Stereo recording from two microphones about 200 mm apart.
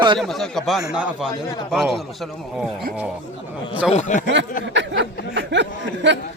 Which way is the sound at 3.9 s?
35° left (ahead or behind).